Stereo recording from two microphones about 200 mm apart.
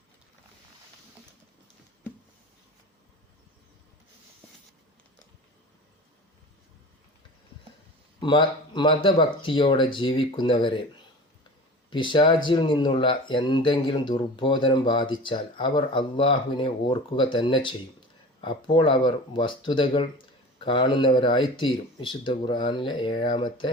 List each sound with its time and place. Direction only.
8.2 s speech: 25° left (ahead or behind)
11.9 s speech: 25° left (ahead or behind)